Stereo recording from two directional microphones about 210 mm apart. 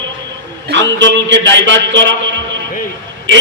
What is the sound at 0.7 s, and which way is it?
A man's voice, 60° right (ahead or behind).